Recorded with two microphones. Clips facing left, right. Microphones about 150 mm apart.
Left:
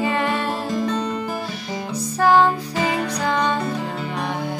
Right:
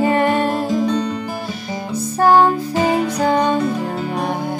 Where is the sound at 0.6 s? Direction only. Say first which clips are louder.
Right 5 dB; centre (ahead or behind).